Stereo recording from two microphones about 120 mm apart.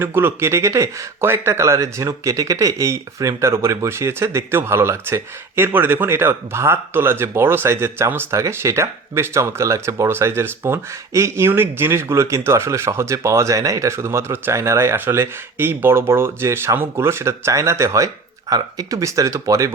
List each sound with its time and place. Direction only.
0.0 s speech: 20° right (ahead or behind)